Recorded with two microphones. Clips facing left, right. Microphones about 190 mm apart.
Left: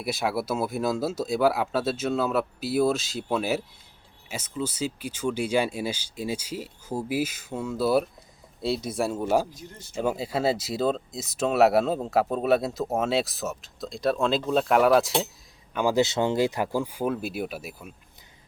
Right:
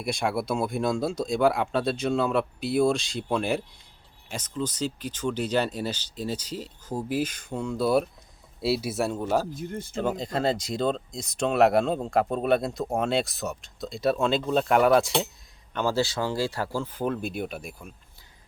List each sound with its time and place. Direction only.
0.0 s speech: 5° left (ahead or behind)
9.6 s speech: 55° right (ahead or behind)
10.0 s speech: 10° left (ahead or behind)
15.7 s speech: 15° left (ahead or behind)